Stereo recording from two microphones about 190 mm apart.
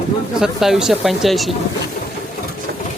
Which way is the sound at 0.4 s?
Centre (ahead or behind).